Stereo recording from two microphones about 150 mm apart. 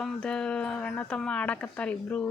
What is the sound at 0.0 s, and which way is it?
Speech, 5° left (ahead or behind).